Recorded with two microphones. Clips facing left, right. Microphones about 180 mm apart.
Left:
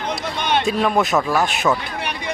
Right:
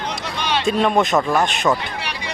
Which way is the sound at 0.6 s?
Centre (ahead or behind).